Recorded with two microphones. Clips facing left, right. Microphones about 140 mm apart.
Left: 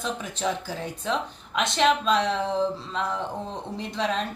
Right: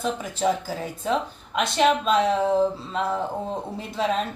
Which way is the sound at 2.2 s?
45° right (ahead or behind).